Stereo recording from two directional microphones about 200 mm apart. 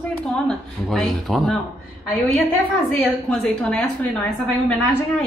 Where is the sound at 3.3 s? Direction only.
5° left (ahead or behind).